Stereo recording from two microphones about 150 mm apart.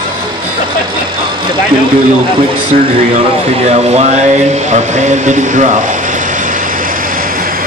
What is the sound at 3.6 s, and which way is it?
Speech, 45° right (ahead or behind).